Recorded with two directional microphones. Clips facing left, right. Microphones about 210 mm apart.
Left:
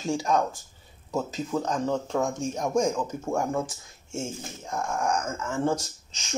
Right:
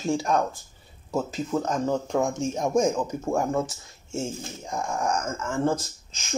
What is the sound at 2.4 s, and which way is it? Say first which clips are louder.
Speech: right 2 dB; 25° right (ahead or behind).